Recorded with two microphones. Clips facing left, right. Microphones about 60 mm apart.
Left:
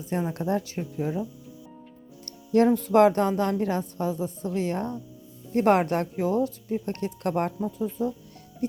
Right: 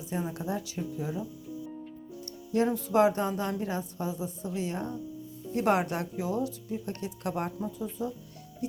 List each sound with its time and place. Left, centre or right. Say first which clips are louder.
0.1 s speech: left 6 dB; left
2.2 s music: left 7 dB; left
2.7 s a woman's voice: left 5 dB; left